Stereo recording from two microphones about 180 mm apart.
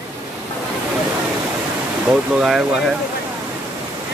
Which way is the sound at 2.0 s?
5° right (ahead or behind).